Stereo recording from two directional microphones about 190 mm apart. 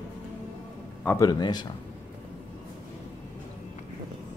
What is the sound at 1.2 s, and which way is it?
Speech, 20° left (ahead or behind).